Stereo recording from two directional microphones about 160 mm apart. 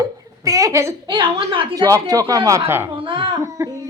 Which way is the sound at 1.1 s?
30° right (ahead or behind).